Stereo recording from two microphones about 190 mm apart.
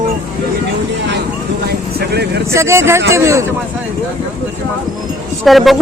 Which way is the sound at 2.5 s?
15° right (ahead or behind).